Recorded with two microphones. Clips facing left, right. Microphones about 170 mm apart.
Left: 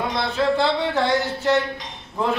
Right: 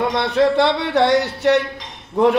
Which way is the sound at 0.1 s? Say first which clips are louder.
Right 5 dB; 70° right (ahead or behind).